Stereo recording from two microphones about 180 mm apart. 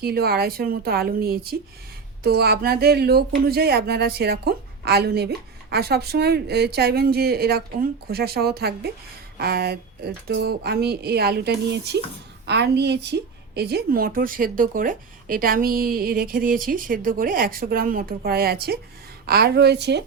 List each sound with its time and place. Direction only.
0.0 s a woman's voice: 60° right (ahead or behind)